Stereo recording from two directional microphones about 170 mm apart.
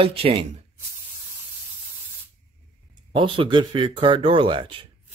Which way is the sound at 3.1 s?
30° right (ahead or behind).